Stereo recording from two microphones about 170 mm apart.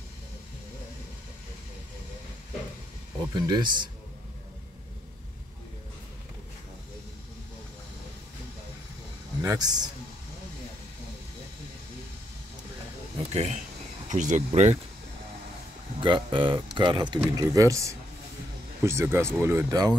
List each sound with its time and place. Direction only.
3.3 s speech: 25° right (ahead or behind)
9.4 s speech: 20° right (ahead or behind)
13.3 s speech: 40° right (ahead or behind)
16.0 s speech: 30° right (ahead or behind)